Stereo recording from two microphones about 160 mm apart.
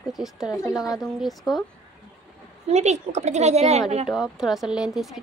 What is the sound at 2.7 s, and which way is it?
A woman's voice, 45° right (ahead or behind).